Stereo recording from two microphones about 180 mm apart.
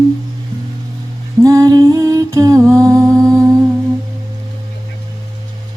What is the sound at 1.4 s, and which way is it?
Music, 20° right (ahead or behind).